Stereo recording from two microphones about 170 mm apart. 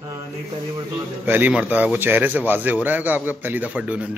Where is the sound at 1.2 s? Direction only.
10° right (ahead or behind).